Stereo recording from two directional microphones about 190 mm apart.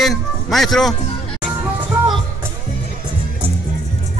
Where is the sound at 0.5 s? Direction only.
Centre (ahead or behind).